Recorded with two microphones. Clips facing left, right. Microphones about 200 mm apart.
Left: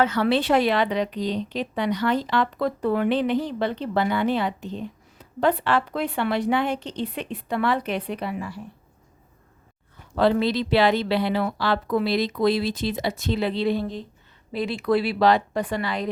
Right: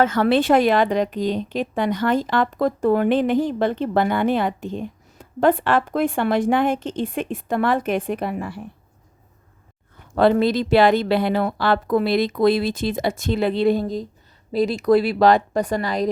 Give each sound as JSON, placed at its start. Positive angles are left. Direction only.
{"t": 0.0, "sound": "a woman's voice", "side_deg": -50}
{"t": 10.2, "sound": "a woman's voice", "side_deg": -50}